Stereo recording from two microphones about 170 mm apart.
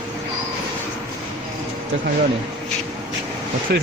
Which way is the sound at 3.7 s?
75° right (ahead or behind).